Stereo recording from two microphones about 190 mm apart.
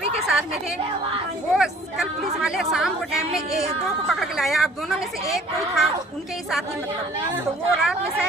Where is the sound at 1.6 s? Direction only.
5° right (ahead or behind).